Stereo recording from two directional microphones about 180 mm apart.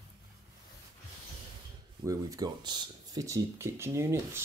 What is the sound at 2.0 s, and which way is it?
Speech, 20° right (ahead or behind).